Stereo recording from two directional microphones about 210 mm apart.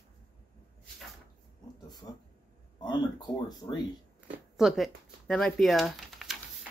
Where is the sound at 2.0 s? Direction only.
20° left (ahead or behind).